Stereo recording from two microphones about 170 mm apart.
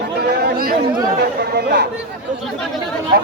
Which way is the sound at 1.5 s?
75° right (ahead or behind).